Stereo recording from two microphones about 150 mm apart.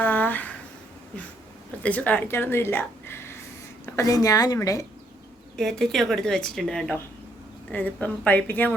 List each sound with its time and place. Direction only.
0.0 s a sound: 10° left (ahead or behind)
1.8 s a woman's voice: 10° left (ahead or behind)
5.5 s a woman's voice: 5° left (ahead or behind)